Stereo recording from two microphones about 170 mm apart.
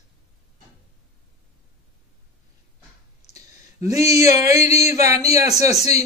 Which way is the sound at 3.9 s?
20° right (ahead or behind).